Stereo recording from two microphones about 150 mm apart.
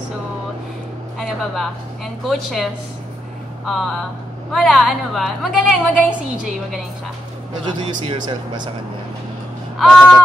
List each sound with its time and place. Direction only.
1.2 s a woman's voice: centre (ahead or behind)
7.8 s speech: 35° right (ahead or behind)
9.8 s a woman's voice: 5° left (ahead or behind)